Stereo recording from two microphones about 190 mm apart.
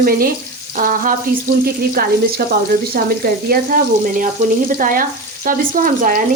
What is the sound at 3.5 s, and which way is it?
Frying, 50° right (ahead or behind).